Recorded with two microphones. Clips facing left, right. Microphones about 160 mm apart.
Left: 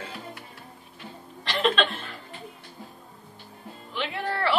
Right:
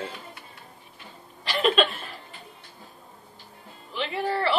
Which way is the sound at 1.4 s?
5° right (ahead or behind).